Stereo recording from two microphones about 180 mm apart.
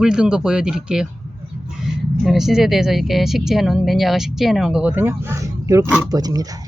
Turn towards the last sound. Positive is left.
turn(degrees=-20)  # may be behind; listen again after turning